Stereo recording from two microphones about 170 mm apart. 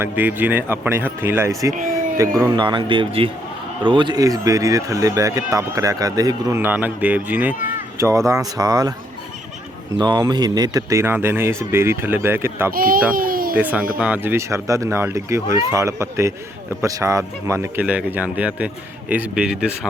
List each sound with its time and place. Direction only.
0.0 s a man's voice: 10° right (ahead or behind)
1.7 s speech: 55° right (ahead or behind)
2.5 s speech: 25° right (ahead or behind)
10.0 s a man's voice: 25° right (ahead or behind)
12.7 s a child's voice: 55° right (ahead or behind)
13.6 s a man's voice: 10° right (ahead or behind)